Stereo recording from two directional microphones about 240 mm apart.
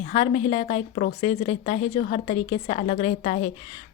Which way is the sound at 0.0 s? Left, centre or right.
Left.